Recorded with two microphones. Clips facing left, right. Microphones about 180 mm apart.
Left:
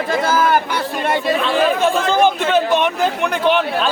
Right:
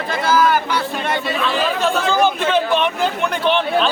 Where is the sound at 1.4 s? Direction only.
20° left (ahead or behind).